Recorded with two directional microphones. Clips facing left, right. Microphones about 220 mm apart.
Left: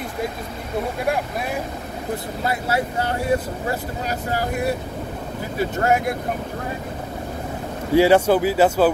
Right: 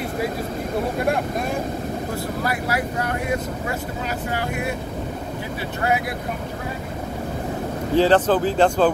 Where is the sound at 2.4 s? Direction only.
25° left (ahead or behind); by 6.2 s 45° left (ahead or behind).